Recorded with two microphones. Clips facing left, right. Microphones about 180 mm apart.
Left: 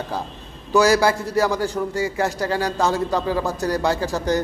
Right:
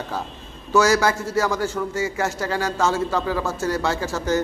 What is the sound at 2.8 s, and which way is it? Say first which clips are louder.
Speech: even; 15° left (ahead or behind).